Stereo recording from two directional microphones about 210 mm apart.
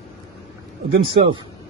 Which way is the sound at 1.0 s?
25° right (ahead or behind).